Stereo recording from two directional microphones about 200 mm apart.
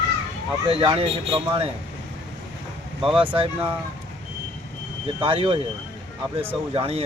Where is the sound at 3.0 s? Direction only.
25° right (ahead or behind).